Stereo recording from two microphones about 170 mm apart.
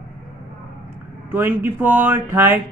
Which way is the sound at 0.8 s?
10° right (ahead or behind).